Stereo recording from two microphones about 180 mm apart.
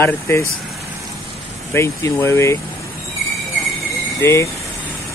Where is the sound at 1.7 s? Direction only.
15° left (ahead or behind).